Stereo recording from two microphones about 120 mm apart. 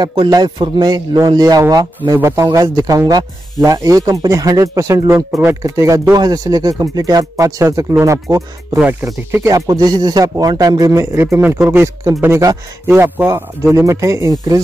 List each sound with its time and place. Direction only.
0.0 s a man's voice: 40° right (ahead or behind); by 9.5 s 20° right (ahead or behind)
9.5 s a man's voice: 30° right (ahead or behind)
11.5 s speech: 10° right (ahead or behind)
11.8 s speech: 25° right (ahead or behind)